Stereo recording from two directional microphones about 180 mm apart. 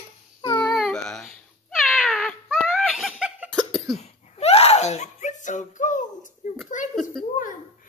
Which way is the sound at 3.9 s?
35° left (ahead or behind).